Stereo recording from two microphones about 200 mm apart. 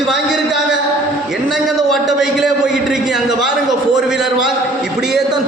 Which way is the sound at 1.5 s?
Centre (ahead or behind).